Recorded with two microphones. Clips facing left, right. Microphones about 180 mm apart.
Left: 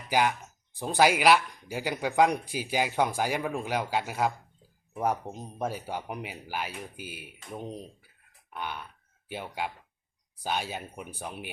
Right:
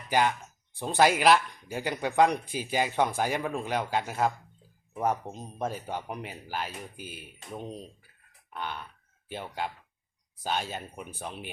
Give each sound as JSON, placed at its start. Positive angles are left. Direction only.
{"t": 0.1, "sound": "speech", "side_deg": 5}